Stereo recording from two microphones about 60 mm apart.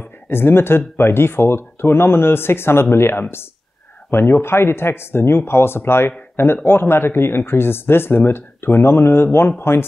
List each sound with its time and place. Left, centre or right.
0.3 s speech: left